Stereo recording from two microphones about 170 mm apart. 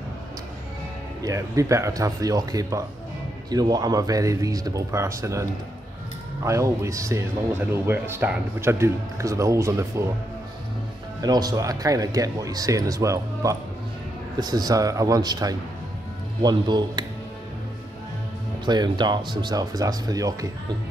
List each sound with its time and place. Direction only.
1.2 s speech: 20° right (ahead or behind)
11.1 s speech: 20° right (ahead or behind)
18.7 s speech: 25° right (ahead or behind)